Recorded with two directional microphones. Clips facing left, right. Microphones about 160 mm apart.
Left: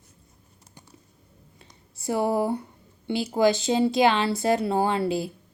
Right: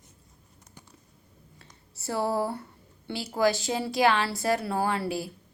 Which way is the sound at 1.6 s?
15° left (ahead or behind).